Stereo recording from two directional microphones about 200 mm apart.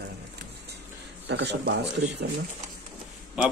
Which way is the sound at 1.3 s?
60° right (ahead or behind).